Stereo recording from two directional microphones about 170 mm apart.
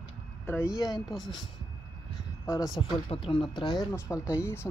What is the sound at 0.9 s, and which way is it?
Speech, centre (ahead or behind).